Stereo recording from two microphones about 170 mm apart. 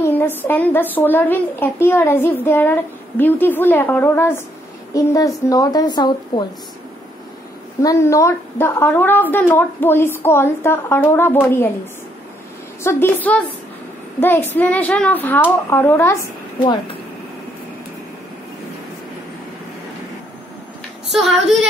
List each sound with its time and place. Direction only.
0.0 s a child's voice: 10° left (ahead or behind)
7.8 s a child's voice: 20° left (ahead or behind)
12.8 s a child's voice: 10° left (ahead or behind)
21.1 s speech: centre (ahead or behind)